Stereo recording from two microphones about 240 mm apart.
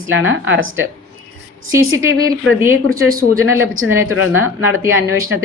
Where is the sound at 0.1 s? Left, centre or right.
Right.